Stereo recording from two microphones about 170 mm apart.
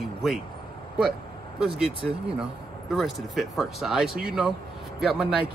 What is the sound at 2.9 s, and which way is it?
Speech, centre (ahead or behind).